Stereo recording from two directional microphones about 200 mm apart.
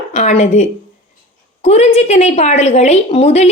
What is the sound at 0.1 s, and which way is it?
A woman's voice, 35° left (ahead or behind).